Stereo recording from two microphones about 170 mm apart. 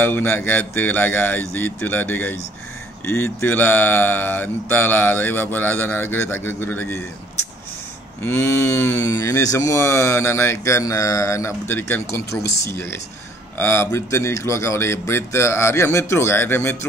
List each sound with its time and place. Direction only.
0.0 s speech: 15° left (ahead or behind)
8.2 s speech: 15° left (ahead or behind)